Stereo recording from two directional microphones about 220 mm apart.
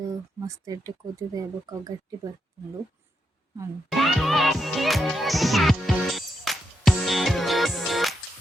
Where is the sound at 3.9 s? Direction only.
Centre (ahead or behind).